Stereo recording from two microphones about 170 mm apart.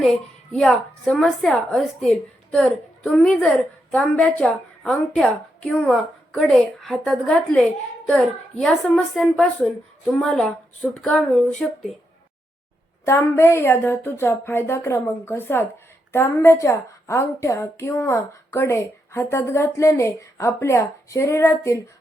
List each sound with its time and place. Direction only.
0.5 s a woman's voice: 5° left (ahead or behind)
13.1 s a woman's voice: 15° left (ahead or behind)